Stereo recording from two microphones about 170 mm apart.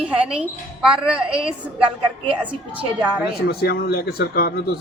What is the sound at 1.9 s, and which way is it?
Speech, 30° right (ahead or behind).